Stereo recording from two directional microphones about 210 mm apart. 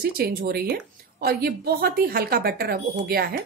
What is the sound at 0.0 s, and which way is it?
Speech, 45° right (ahead or behind).